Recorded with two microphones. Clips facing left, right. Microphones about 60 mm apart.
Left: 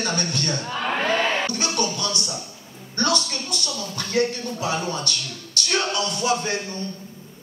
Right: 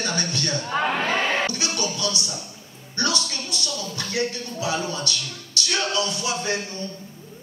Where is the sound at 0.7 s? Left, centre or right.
Right.